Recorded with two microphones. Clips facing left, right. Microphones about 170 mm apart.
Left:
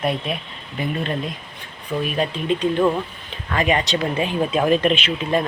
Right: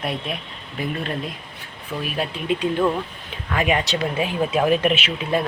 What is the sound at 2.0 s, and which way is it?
Speech, 5° right (ahead or behind).